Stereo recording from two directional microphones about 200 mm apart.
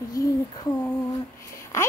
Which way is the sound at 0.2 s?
15° left (ahead or behind).